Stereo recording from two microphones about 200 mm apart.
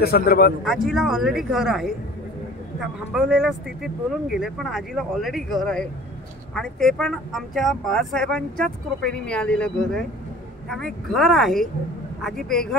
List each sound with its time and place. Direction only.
0.0 s speech: 50° left (ahead or behind)
0.7 s speech: centre (ahead or behind)